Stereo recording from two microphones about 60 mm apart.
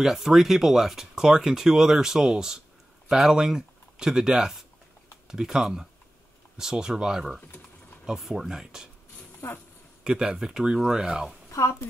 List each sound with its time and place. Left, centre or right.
0.0 s speech: centre
9.4 s speech: left
10.0 s speech: centre